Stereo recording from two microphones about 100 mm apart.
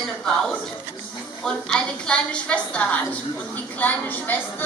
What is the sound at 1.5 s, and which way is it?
A woman's voice, 10° left (ahead or behind).